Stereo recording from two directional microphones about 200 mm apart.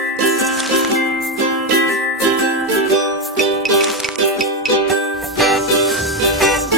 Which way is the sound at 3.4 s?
Centre (ahead or behind).